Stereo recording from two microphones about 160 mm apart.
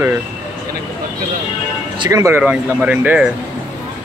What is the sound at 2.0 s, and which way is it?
Speech, 20° right (ahead or behind).